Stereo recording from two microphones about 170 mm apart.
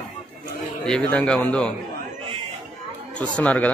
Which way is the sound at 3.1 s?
10° left (ahead or behind).